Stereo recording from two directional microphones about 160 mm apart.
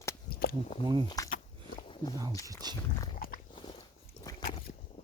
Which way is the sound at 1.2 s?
20° left (ahead or behind).